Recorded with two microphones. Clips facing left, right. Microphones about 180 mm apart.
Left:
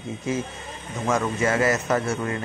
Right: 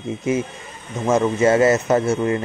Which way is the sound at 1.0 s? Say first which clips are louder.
Right 7 dB; 25° right (ahead or behind).